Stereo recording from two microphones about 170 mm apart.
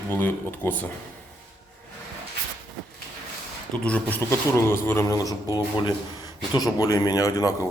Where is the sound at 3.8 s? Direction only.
10° left (ahead or behind).